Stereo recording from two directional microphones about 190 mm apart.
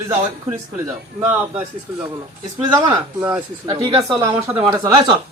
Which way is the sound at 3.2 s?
10° right (ahead or behind).